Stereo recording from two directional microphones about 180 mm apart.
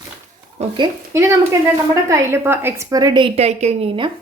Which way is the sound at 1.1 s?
15° right (ahead or behind).